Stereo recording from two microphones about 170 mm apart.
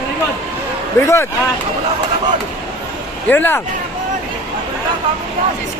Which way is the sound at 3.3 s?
10° left (ahead or behind).